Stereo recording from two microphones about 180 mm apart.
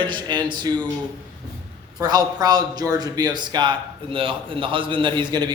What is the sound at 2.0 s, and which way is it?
A man's voice, 20° right (ahead or behind).